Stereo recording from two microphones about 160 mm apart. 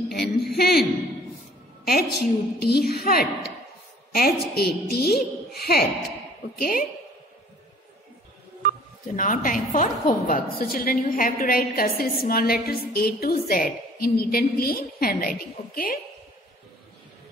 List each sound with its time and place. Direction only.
0.1 s speech: 85° left
0.6 s a woman's voice: 70° left (ahead or behind)
1.9 s a woman's voice: 75° left (ahead or behind)
6.6 s a woman's voice: 65° left (ahead or behind)
9.0 s a woman's voice: 55° left (ahead or behind)